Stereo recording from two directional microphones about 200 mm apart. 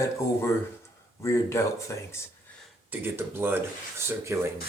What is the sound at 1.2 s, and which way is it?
Speech, 15° left (ahead or behind).